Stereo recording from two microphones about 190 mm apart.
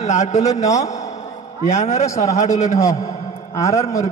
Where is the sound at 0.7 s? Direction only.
15° left (ahead or behind).